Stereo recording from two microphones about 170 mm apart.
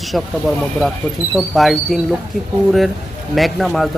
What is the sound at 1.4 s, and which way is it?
Speech, centre (ahead or behind).